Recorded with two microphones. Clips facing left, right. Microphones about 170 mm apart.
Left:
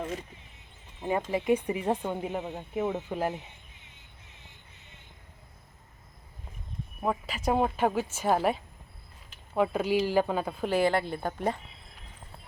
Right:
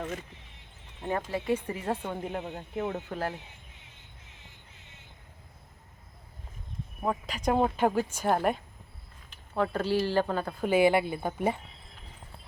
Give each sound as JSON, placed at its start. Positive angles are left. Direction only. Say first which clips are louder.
{"t": 1.0, "sound": "speech", "louder": "left 3 dB", "side_deg": 15}
{"t": 7.0, "sound": "speech", "louder": "even", "side_deg": 5}
{"t": 10.7, "sound": "speech", "louder": "right 3 dB", "side_deg": -5}